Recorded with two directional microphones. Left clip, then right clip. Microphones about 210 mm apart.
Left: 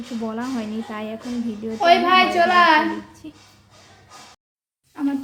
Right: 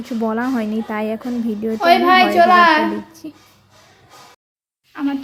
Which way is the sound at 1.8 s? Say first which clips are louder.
Right 3 dB; 10° right (ahead or behind).